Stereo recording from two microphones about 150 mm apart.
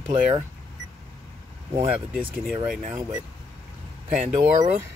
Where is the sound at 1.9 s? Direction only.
5° right (ahead or behind).